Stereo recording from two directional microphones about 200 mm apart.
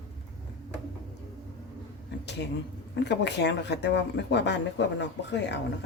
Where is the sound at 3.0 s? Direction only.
60° left (ahead or behind).